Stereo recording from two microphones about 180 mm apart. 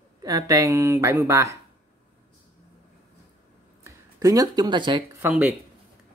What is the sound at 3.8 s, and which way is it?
Speech, 20° right (ahead or behind).